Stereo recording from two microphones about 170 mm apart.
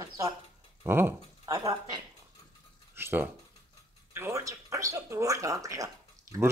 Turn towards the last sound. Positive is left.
turn(degrees=-20)  # may be behind; listen again after turning